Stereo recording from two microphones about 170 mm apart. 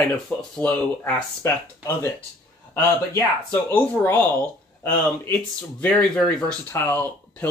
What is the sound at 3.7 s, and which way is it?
Speech, 10° left (ahead or behind).